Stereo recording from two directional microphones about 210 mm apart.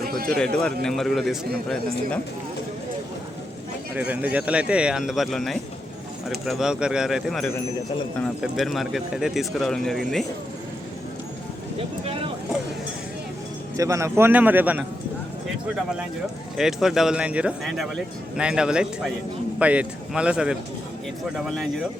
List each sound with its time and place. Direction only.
0.3 s speech: 5° left (ahead or behind)
3.9 s speech: 10° right (ahead or behind)
11.8 s speech: 25° right (ahead or behind)
13.7 s a man's voice: 15° right (ahead or behind)
16.6 s speech: centre (ahead or behind)